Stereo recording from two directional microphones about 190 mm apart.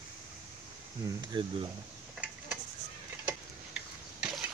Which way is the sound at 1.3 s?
25° right (ahead or behind).